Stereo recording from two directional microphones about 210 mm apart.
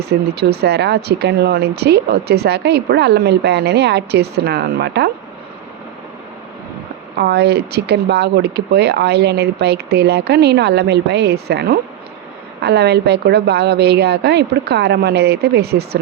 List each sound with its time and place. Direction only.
0.0 s speech: 50° right (ahead or behind)
7.2 s speech: 50° right (ahead or behind)